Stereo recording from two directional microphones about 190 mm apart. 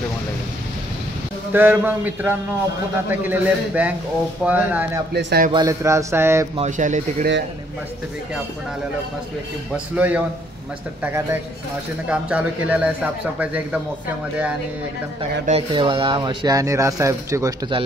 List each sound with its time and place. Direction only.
1.5 s a man's voice: 10° right (ahead or behind)
5.1 s a man's voice: 55° right (ahead or behind)
5.5 s a man's voice: 20° right (ahead or behind)
6.5 s speech: 40° right (ahead or behind)
9.9 s a man's voice: 10° right (ahead or behind)
15.7 s speech: 25° right (ahead or behind)